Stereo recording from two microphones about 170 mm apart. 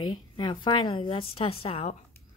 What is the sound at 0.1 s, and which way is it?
A woman's voice, 25° left (ahead or behind).